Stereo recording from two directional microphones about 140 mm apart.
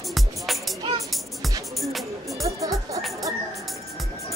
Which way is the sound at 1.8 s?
Centre (ahead or behind).